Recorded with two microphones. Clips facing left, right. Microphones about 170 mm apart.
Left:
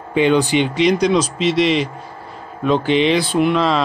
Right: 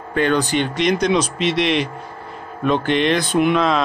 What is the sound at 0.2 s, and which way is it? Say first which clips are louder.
Speech: left 3 dB; 10° left (ahead or behind).